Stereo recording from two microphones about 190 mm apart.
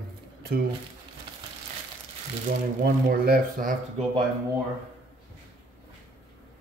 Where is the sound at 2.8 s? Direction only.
55° right (ahead or behind).